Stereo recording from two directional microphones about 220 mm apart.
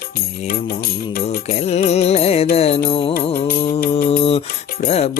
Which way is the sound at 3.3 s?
40° left (ahead or behind).